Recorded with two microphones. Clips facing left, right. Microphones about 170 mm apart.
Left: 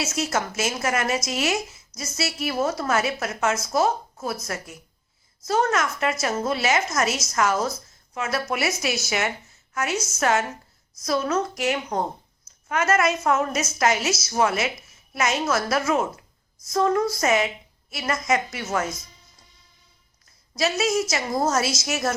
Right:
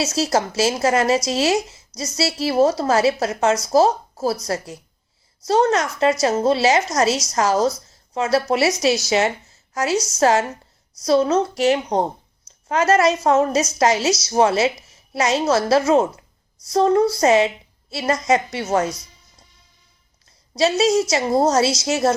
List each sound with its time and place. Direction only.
0.0 s a woman's voice: 35° right (ahead or behind)
20.5 s speech: 30° right (ahead or behind)